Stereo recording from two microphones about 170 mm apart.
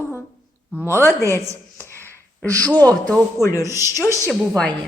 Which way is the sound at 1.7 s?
15° left (ahead or behind).